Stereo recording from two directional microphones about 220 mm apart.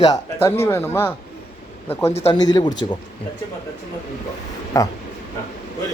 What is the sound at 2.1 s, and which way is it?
Speech, 30° left (ahead or behind).